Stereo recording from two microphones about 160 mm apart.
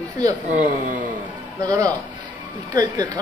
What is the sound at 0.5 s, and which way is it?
Speech, 55° right (ahead or behind).